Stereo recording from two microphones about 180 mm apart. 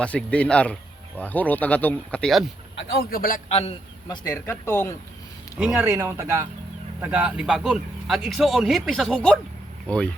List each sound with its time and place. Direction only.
0.0 s speech: 5° left (ahead or behind)
2.7 s a man's voice: 60° left (ahead or behind)
3.5 s a man's voice: 35° left (ahead or behind)
4.3 s speech: 15° left (ahead or behind)
5.5 s speech: 5° right (ahead or behind)